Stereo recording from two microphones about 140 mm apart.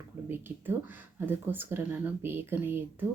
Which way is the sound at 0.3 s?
15° right (ahead or behind).